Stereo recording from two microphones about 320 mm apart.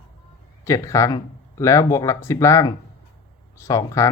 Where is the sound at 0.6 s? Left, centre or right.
Centre.